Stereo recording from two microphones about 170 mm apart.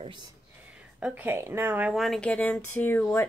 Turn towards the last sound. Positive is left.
turn(degrees=10)  # may be behind; listen again after turning